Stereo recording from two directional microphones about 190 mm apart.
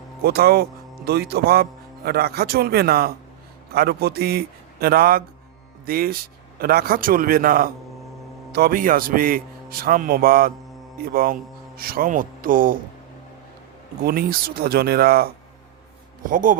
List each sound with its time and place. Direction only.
0.2 s a man's voice: 55° right (ahead or behind)
14.0 s a man's voice: 50° right (ahead or behind)